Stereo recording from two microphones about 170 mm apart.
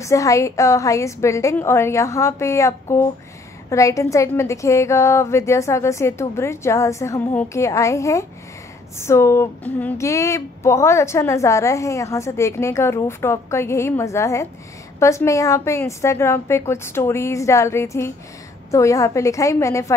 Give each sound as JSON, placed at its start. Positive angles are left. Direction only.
{"t": 0.0, "sound": "speech", "side_deg": 20}